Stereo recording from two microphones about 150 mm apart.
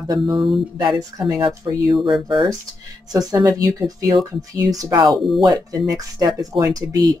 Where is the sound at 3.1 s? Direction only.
25° right (ahead or behind).